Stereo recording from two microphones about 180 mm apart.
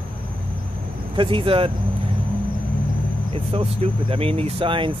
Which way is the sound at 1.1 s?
30° right (ahead or behind).